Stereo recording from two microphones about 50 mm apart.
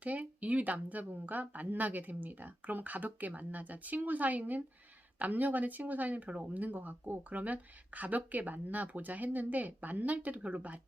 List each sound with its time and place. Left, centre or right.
0.0 s speech: right